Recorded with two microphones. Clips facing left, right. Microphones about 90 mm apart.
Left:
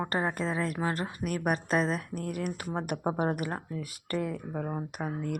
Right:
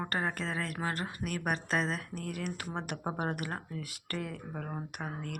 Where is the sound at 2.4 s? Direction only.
10° left (ahead or behind).